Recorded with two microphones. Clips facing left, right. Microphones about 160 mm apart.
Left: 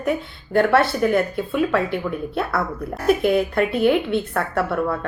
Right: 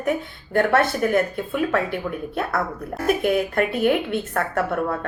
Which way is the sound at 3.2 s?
50° right (ahead or behind).